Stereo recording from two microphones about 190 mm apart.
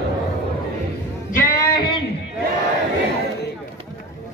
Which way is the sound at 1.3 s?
50° left (ahead or behind).